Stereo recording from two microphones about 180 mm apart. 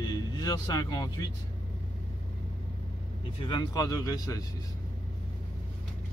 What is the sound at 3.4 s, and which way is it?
Speech, 25° left (ahead or behind).